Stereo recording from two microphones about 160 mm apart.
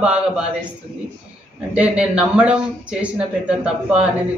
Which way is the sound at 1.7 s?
5° right (ahead or behind).